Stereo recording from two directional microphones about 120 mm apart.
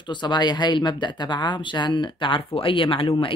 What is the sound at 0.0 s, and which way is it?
Speech, 40° left (ahead or behind).